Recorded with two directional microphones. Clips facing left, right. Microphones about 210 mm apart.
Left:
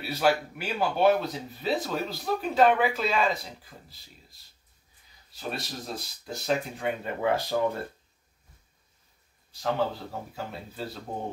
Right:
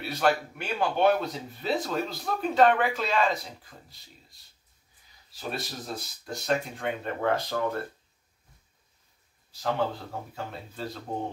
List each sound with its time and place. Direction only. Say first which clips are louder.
0.0 s speech: left 1 dB; 5° left (ahead or behind)
5.3 s speech: even; centre (ahead or behind)
9.6 s speech: left 1 dB; centre (ahead or behind)